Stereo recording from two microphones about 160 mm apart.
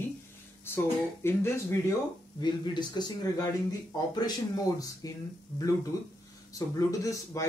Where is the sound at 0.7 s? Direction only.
15° left (ahead or behind).